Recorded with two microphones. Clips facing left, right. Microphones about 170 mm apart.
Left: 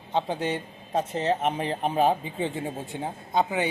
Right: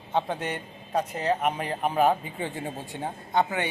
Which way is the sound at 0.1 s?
25° left (ahead or behind).